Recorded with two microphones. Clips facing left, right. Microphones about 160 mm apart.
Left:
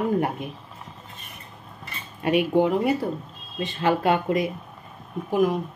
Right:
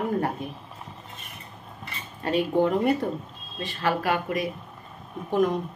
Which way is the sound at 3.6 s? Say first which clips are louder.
Left 4 dB; 20° left (ahead or behind).